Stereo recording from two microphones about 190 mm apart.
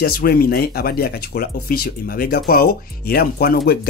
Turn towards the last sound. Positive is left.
turn(degrees=55)  # may be behind; listen again after turning